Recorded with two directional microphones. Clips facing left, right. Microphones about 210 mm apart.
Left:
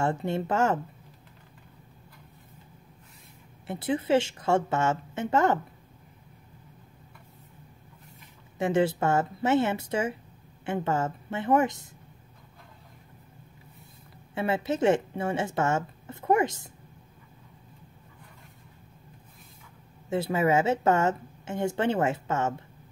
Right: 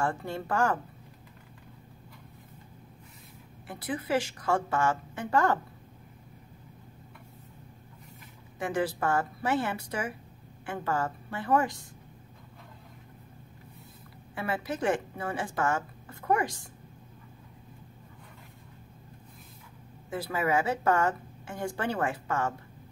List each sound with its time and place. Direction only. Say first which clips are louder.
0.0 s a woman's voice: left 4 dB; 25° left (ahead or behind)
3.6 s a woman's voice: left 6 dB; 25° left (ahead or behind)
8.5 s a woman's voice: left 5 dB; 25° left (ahead or behind)
14.3 s a woman's voice: left 5 dB; 25° left (ahead or behind)
20.1 s a woman's voice: left 5 dB; 25° left (ahead or behind)